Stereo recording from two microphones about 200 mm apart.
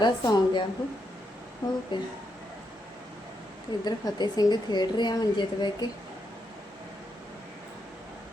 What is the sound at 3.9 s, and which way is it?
Speech, 20° left (ahead or behind).